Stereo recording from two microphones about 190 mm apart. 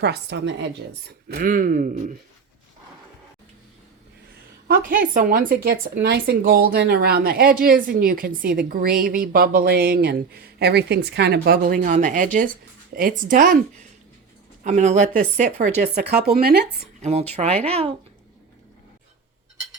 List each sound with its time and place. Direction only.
0.0 s speech: 60° right (ahead or behind); by 2.1 s 45° right (ahead or behind)
4.7 s speech: 45° right (ahead or behind)
14.6 s speech: 40° right (ahead or behind)
15.8 s speech: 60° right (ahead or behind)
17.0 s speech: 35° right (ahead or behind)